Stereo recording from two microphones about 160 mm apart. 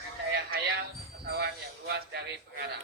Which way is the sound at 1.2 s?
80° right.